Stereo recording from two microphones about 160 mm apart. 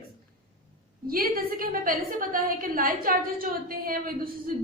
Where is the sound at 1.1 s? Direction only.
65° right (ahead or behind).